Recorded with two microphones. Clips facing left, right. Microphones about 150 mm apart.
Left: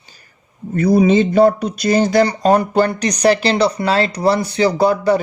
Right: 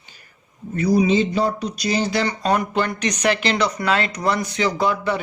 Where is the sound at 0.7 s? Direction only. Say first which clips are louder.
Left 5 dB; 50° left (ahead or behind).